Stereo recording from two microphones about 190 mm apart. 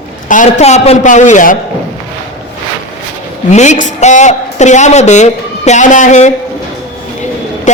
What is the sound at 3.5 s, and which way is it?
A woman's voice, 40° left (ahead or behind).